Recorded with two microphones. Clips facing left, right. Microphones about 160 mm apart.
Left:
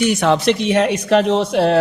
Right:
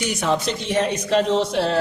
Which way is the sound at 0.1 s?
75° left (ahead or behind).